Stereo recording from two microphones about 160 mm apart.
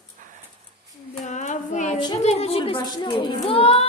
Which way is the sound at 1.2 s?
50° left (ahead or behind).